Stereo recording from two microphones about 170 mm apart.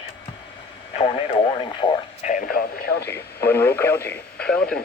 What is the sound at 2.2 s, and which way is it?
Speech, 55° left (ahead or behind).